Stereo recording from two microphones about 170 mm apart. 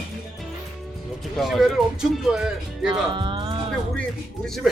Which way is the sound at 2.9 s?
30° right (ahead or behind).